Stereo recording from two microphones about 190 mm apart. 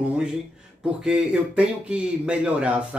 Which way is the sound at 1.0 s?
5° right (ahead or behind).